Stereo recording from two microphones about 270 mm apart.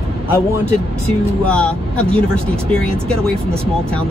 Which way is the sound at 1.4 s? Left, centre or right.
Centre.